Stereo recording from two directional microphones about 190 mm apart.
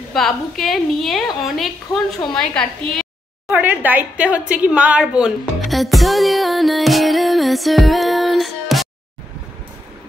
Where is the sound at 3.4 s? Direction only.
10° right (ahead or behind).